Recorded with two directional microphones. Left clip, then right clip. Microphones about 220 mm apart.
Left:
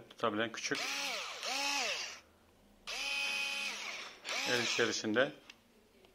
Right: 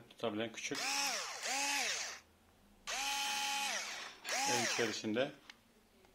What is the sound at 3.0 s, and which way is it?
Drill, 20° right (ahead or behind).